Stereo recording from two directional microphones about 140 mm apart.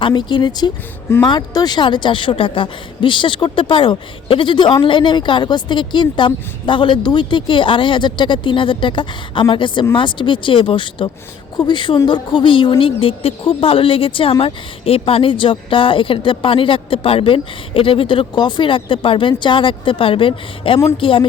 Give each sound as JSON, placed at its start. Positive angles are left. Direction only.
{"t": 0.0, "sound": "a woman's voice", "side_deg": 35}